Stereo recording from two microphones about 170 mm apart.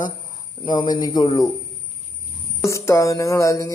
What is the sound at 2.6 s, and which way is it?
Speech, 15° left (ahead or behind).